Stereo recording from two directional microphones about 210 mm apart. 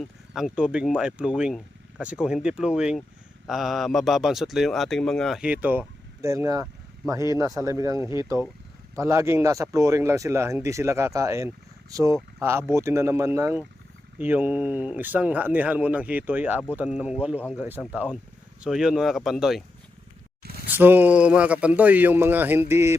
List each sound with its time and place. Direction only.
0.0 s speech: centre (ahead or behind)
20.4 s a sound: 45° right (ahead or behind)
20.7 s speech: 10° right (ahead or behind)